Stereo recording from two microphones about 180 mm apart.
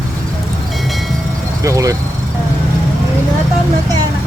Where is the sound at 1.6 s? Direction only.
20° right (ahead or behind).